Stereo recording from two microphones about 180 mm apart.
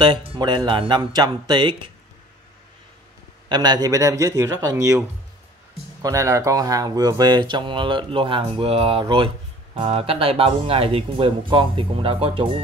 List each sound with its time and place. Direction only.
0.0 s speech: 30° right (ahead or behind)
3.4 s speech: 25° right (ahead or behind)
6.0 s speech: 15° right (ahead or behind)